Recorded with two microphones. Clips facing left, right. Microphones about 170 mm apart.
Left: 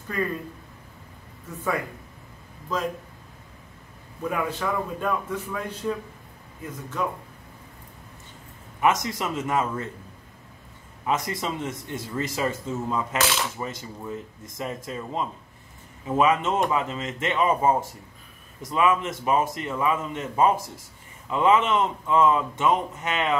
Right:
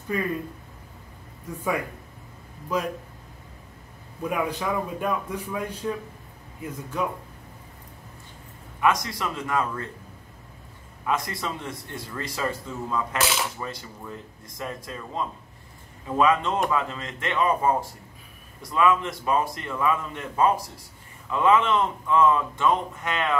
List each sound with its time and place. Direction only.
1.5 s a man's voice: 10° right (ahead or behind)
4.2 s a man's voice: 10° right (ahead or behind)
8.8 s speech: 20° left (ahead or behind)
11.1 s speech: 20° left (ahead or behind)